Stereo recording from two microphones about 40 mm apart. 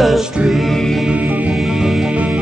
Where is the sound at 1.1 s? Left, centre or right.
Right.